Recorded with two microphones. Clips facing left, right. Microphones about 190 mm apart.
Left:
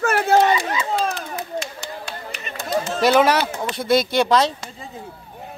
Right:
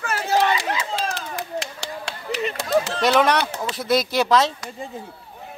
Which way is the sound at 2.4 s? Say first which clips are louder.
Right 4 dB; 75° right (ahead or behind).